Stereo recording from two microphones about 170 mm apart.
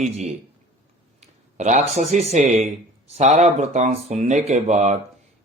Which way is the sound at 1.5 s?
45° right (ahead or behind).